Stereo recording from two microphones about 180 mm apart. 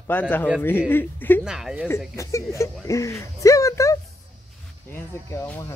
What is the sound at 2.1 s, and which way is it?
Speech, 15° left (ahead or behind).